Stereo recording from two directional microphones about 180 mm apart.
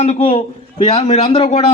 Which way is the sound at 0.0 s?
40° left (ahead or behind).